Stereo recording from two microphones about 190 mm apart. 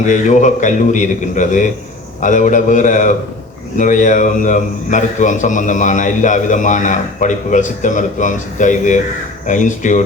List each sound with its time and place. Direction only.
0.1 s a man's voice: 40° left (ahead or behind)